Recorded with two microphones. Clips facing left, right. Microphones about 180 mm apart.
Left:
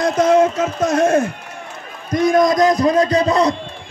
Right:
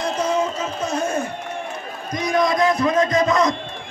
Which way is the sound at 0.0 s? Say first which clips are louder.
Left 8 dB; 90° left.